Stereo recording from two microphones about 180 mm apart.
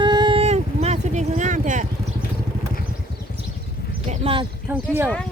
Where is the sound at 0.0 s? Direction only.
25° right (ahead or behind); by 1.9 s 45° right (ahead or behind).